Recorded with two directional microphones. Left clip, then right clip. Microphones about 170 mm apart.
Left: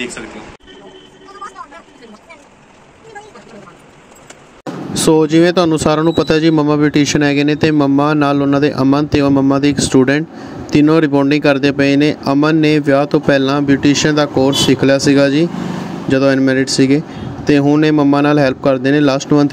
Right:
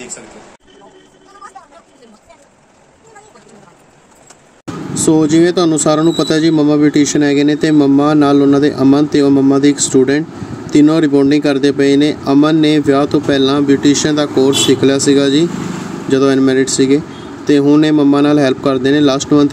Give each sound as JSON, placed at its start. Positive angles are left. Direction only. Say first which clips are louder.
{"t": 4.9, "sound": "speech", "louder": "even", "side_deg": 55}